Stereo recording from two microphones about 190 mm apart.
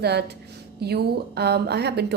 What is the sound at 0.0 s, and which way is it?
A woman's voice, 60° right (ahead or behind).